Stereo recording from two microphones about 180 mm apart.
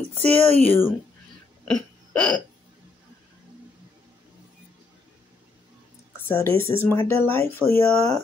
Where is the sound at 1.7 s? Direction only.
5° left (ahead or behind).